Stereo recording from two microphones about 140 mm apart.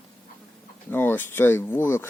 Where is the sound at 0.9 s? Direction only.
15° left (ahead or behind).